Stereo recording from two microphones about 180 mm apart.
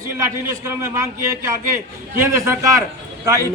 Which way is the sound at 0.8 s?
15° right (ahead or behind).